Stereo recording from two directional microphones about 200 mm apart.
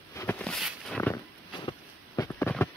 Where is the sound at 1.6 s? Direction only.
15° left (ahead or behind).